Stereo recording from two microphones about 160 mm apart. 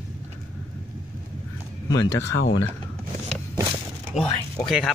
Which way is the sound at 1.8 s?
25° left (ahead or behind).